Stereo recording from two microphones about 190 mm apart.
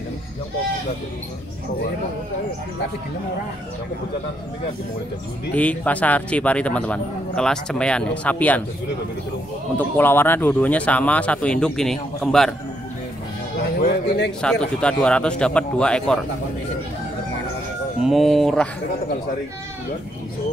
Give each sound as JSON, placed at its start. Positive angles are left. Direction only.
{"t": 5.5, "sound": "speech", "side_deg": 5}
{"t": 9.8, "sound": "speech", "side_deg": 10}
{"t": 13.6, "sound": "speech", "side_deg": 60}
{"t": 14.4, "sound": "speech", "side_deg": 5}
{"t": 18.0, "sound": "speech", "side_deg": 0}